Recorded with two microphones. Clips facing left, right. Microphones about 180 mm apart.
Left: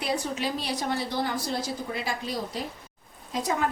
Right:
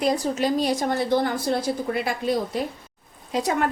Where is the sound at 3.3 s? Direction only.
65° right (ahead or behind).